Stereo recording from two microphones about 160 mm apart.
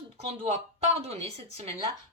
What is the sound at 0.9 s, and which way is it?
Speech, 40° right (ahead or behind).